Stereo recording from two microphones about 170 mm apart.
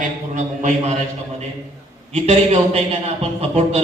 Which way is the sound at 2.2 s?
40° right (ahead or behind).